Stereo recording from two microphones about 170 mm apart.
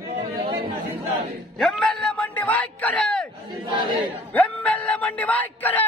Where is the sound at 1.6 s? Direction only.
5° left (ahead or behind).